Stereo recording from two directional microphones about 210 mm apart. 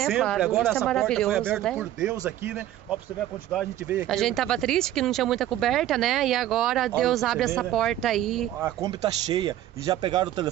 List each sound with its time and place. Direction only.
0.2 s speech: centre (ahead or behind)
8.6 s speech: 15° right (ahead or behind)